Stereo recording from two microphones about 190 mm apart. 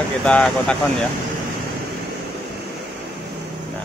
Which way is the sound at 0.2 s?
5° left (ahead or behind).